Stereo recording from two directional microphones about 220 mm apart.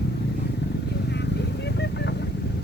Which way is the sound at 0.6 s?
50° left (ahead or behind).